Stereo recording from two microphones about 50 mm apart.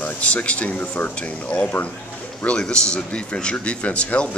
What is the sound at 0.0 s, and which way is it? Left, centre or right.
Speech, left.